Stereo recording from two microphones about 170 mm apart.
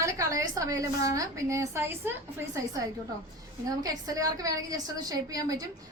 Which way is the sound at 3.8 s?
20° right (ahead or behind).